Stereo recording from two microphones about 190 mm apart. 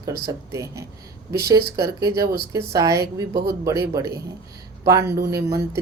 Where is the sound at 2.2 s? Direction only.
55° right (ahead or behind).